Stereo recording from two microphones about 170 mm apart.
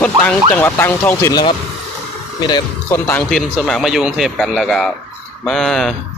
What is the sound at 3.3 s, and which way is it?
Speech, centre (ahead or behind).